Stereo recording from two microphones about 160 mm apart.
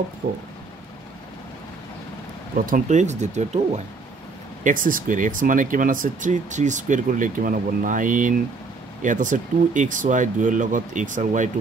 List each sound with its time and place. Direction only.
2.5 s speech: 60° right (ahead or behind)
4.6 s speech: 55° right (ahead or behind)